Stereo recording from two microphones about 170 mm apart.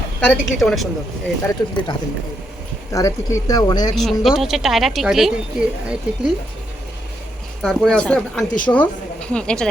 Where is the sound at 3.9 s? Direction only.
Centre (ahead or behind).